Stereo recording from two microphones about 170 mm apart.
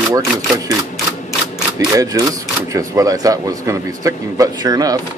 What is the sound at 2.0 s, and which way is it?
A man's voice, 20° right (ahead or behind).